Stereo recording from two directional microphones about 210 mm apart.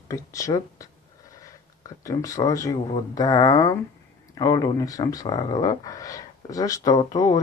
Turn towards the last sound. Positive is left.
turn(degrees=15)  # may be behind; listen again after turning